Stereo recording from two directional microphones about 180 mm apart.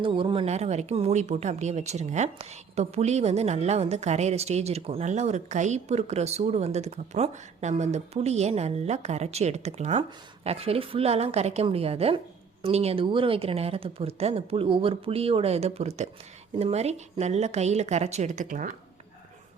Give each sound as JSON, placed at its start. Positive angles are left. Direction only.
{"t": 0.0, "sound": "speech", "side_deg": -30}